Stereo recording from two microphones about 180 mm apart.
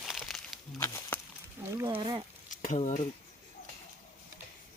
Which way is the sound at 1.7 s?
25° right (ahead or behind).